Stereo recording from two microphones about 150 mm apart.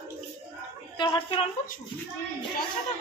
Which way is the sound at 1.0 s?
35° left (ahead or behind).